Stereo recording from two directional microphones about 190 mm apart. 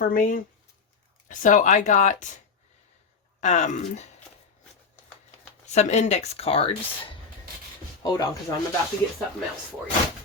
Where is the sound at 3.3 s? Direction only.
40° left (ahead or behind).